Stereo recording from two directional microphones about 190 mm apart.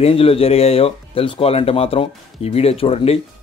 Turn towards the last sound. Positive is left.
turn(degrees=30)  # may be behind; listen again after turning